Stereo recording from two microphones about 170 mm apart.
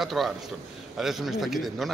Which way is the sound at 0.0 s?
Centre (ahead or behind).